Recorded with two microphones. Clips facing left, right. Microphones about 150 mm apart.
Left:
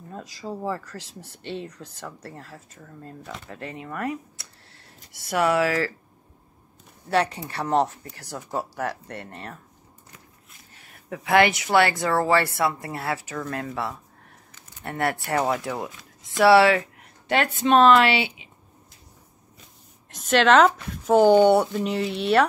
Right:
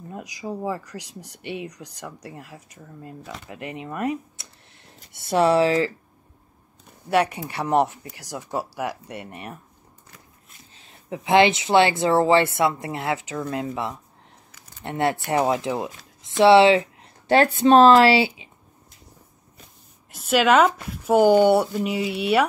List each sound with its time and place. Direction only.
0.1 s speech: 15° right (ahead or behind)
7.1 s speech: 15° right (ahead or behind)
10.7 s speech: 20° right (ahead or behind)
20.1 s speech: 5° right (ahead or behind)